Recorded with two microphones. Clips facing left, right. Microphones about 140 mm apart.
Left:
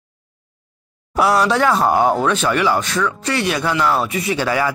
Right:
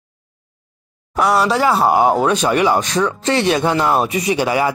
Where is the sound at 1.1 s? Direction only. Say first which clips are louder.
Even; centre (ahead or behind).